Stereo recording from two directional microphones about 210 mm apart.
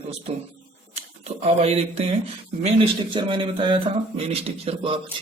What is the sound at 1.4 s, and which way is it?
Speech, 30° right (ahead or behind).